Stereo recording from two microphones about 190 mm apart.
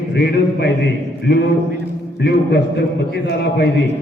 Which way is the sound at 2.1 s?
60° left (ahead or behind).